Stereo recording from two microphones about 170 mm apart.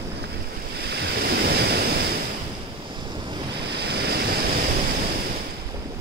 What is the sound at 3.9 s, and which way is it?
Waves, 75° right (ahead or behind).